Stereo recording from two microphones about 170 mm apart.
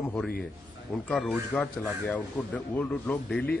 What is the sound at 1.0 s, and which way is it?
A man's voice, 5° left (ahead or behind).